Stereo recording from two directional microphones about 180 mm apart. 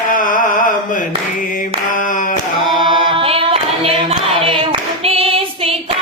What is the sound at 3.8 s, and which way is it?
Singing, 30° right (ahead or behind).